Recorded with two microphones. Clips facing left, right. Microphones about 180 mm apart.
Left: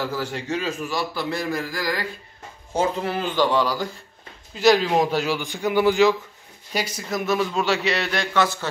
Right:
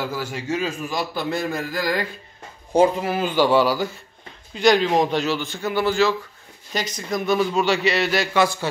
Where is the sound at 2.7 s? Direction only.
10° right (ahead or behind).